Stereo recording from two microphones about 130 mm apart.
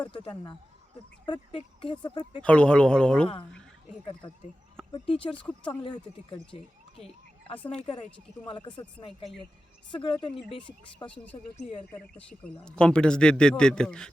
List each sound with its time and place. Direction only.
0.1 s speech: 40° left (ahead or behind)
2.4 s speech: 10° left (ahead or behind)
4.0 s speech: 40° left (ahead or behind)
4.8 s a sound: 5° left (ahead or behind)
5.1 s speech: 10° left (ahead or behind)
5.6 s speech: 35° left (ahead or behind)
7.6 s speech: 5° left (ahead or behind)
8.4 s speech: 35° left (ahead or behind)
11.0 s speech: 10° left (ahead or behind)